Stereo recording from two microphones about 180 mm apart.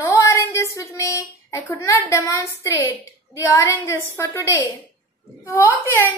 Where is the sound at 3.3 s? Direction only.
15° left (ahead or behind).